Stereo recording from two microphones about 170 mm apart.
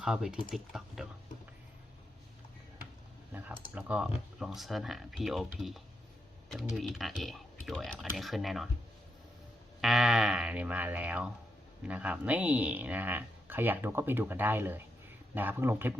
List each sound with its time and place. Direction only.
0.0 s speech: 5° right (ahead or behind)
3.8 s speech: 10° right (ahead or behind)
9.8 s a sound: centre (ahead or behind)
11.9 s speech: 10° right (ahead or behind)